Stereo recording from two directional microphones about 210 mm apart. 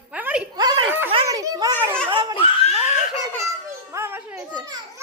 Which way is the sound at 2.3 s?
25° left (ahead or behind).